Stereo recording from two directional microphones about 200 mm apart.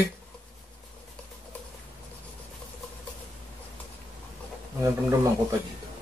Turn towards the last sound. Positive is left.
turn(degrees=-15)  # may be behind; listen again after turning